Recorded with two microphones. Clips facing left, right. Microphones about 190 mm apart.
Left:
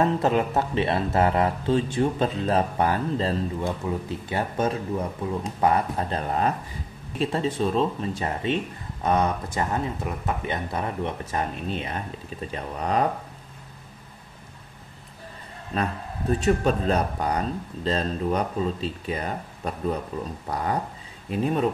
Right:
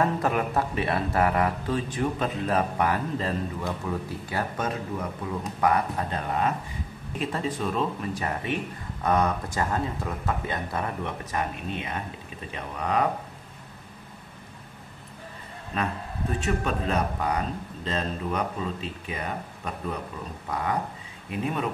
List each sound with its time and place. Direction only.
0.0 s speech: 25° left (ahead or behind)
11.3 s speech: 35° left (ahead or behind)
15.7 s speech: 35° left (ahead or behind)